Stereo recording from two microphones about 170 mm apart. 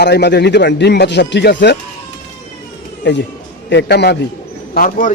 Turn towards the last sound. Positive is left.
turn(degrees=55)  # may be behind; listen again after turning